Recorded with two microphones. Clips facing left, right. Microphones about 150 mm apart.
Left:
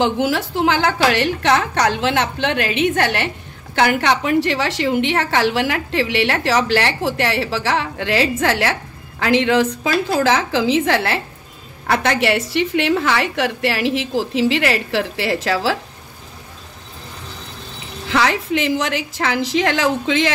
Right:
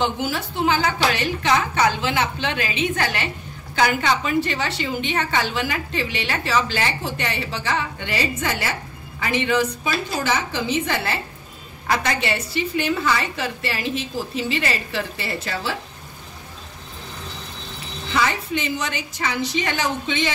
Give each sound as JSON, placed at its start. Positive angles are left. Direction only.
{"t": 0.0, "sound": "a woman's voice", "side_deg": 90}
{"t": 11.9, "sound": "a woman's voice", "side_deg": 75}
{"t": 18.0, "sound": "a woman's voice", "side_deg": 80}